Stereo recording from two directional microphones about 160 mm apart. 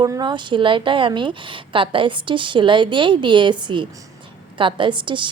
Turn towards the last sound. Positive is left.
turn(degrees=-30)  # may be behind; listen again after turning